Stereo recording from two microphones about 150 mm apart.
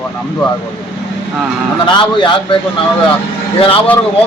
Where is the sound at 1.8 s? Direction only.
30° left (ahead or behind).